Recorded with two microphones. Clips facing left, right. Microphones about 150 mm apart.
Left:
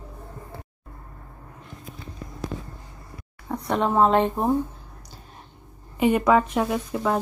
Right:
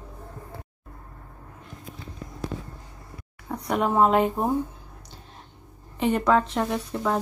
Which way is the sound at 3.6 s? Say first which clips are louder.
Left 1 dB; 5° right (ahead or behind).